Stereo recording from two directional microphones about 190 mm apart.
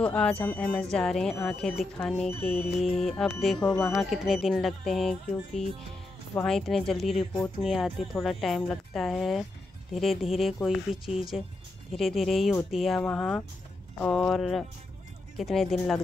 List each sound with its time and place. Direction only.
0.0 s speech: 5° left (ahead or behind)
3.5 s speech: 20° left (ahead or behind)
3.9 s speech: centre (ahead or behind)